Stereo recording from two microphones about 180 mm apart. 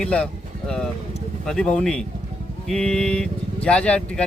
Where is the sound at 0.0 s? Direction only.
5° left (ahead or behind).